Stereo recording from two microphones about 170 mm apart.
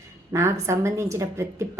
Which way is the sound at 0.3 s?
15° right (ahead or behind).